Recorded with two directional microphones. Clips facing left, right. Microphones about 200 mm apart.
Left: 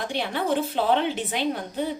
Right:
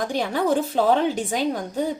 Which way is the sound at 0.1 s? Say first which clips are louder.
Right 3 dB; 40° right (ahead or behind).